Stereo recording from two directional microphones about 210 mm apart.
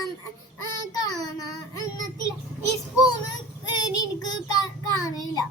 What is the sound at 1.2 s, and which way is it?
Child singing, 15° left (ahead or behind).